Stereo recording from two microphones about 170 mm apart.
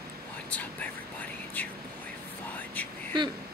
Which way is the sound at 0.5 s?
10° left (ahead or behind).